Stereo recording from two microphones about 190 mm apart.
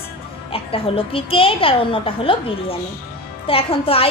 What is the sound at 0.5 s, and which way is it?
A woman's voice, 30° left (ahead or behind).